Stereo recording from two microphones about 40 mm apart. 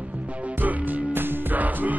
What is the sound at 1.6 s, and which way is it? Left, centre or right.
Music, right.